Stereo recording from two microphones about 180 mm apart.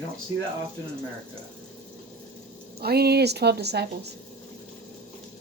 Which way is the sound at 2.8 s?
60° right (ahead or behind).